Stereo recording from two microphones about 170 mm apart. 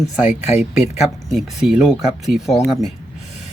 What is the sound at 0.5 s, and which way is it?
Speech, 40° left (ahead or behind).